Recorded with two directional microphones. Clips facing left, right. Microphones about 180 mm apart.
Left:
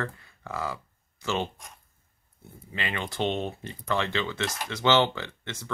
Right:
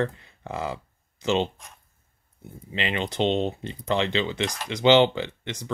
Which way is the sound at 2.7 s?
20° right (ahead or behind).